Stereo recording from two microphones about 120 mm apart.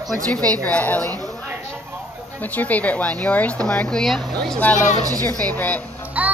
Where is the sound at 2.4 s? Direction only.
15° left (ahead or behind).